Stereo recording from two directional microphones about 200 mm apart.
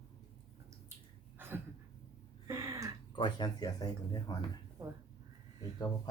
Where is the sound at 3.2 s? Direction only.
20° left (ahead or behind).